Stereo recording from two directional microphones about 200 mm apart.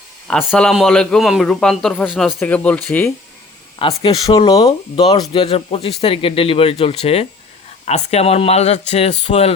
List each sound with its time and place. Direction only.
0.3 s a man's voice: 5° left (ahead or behind)
3.8 s speech: 25° left (ahead or behind)